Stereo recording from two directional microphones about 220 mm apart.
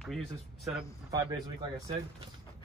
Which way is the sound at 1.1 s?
15° right (ahead or behind).